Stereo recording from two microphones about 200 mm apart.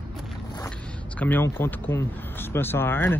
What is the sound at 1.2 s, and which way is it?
Speech, 10° left (ahead or behind).